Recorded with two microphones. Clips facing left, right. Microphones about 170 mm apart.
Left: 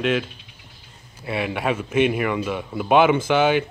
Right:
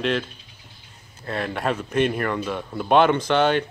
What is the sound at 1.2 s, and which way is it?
Speech, 10° left (ahead or behind).